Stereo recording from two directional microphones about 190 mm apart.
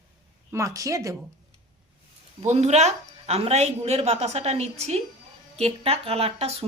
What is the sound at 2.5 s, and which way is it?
A woman's voice, 35° right (ahead or behind).